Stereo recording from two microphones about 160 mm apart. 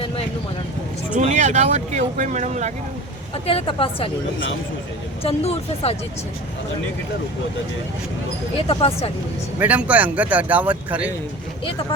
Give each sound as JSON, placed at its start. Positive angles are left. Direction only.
{"t": 1.1, "sound": "speech", "side_deg": -50}
{"t": 3.3, "sound": "a woman's voice", "side_deg": 35}
{"t": 5.2, "sound": "a woman's voice", "side_deg": 40}
{"t": 8.6, "sound": "a woman's voice", "side_deg": 40}
{"t": 9.6, "sound": "speech", "side_deg": -10}